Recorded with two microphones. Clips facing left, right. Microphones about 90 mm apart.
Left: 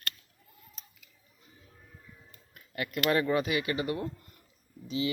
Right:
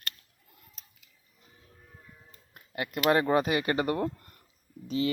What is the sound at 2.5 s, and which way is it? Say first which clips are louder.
Speech: right 1 dB; 30° right (ahead or behind).